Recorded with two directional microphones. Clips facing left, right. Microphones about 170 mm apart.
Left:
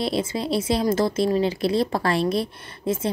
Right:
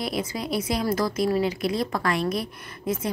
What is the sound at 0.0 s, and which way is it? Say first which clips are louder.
A woman's voice: left 4 dB; 25° left (ahead or behind).